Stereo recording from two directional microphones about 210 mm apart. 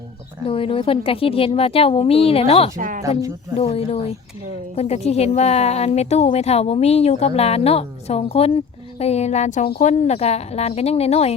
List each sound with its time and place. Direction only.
0.4 s a woman's voice: 25° left (ahead or behind)
2.7 s speech: 40° right (ahead or behind)
3.0 s speech: 15° right (ahead or behind)
3.6 s a woman's voice: 30° left (ahead or behind)